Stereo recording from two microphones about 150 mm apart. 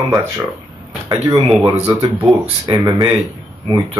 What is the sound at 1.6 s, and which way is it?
Speech, 15° right (ahead or behind).